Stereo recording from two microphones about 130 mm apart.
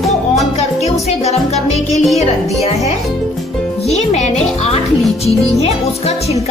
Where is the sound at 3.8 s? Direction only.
55° left (ahead or behind).